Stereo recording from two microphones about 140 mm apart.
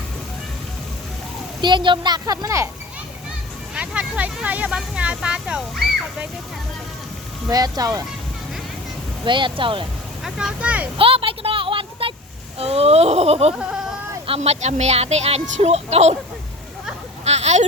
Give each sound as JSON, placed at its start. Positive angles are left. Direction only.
{"t": 1.6, "sound": "speech", "side_deg": -35}
{"t": 3.8, "sound": "speech", "side_deg": -10}
{"t": 7.5, "sound": "speech", "side_deg": -25}
{"t": 9.2, "sound": "a woman's voice", "side_deg": -35}
{"t": 10.2, "sound": "speech", "side_deg": -5}
{"t": 10.9, "sound": "a woman's voice", "side_deg": -40}
{"t": 17.2, "sound": "speech", "side_deg": -50}